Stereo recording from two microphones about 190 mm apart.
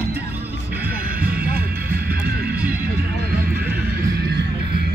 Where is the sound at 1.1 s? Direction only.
50° right (ahead or behind).